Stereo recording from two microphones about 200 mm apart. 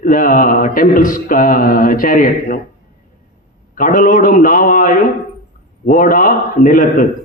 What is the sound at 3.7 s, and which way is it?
Speech, 45° left (ahead or behind).